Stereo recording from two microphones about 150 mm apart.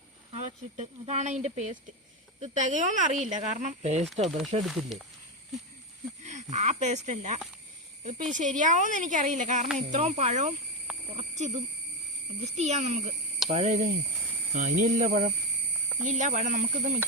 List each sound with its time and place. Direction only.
0.3 s speech: 45° right (ahead or behind)
2.4 s speech: 55° right (ahead or behind)
4.6 s speech: centre (ahead or behind)
6.2 s speech: 50° right (ahead or behind)